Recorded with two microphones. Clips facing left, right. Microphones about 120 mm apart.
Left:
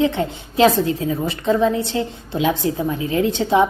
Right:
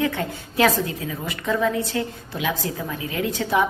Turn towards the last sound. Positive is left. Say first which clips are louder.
# left 6 dB
turn(degrees=25)  # may be behind; listen again after turning